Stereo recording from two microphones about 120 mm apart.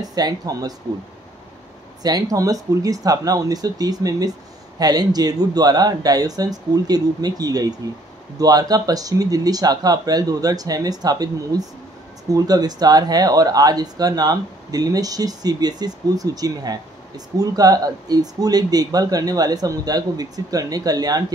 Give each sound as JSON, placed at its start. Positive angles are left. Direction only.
{"t": 0.1, "sound": "speech", "side_deg": -30}
{"t": 2.0, "sound": "speech", "side_deg": -30}